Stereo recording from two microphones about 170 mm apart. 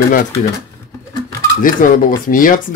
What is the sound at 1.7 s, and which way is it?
Speech, 55° left (ahead or behind).